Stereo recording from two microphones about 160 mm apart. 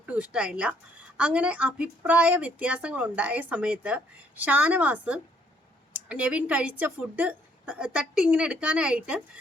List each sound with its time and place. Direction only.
0.0 s a woman's voice: 10° right (ahead or behind)